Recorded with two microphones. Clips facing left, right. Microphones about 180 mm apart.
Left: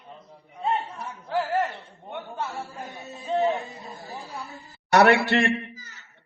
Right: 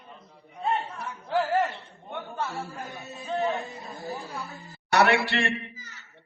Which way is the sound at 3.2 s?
25° left (ahead or behind).